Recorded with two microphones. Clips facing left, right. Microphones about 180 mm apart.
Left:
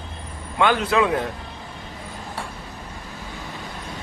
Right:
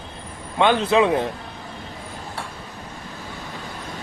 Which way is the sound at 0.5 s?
25° right (ahead or behind).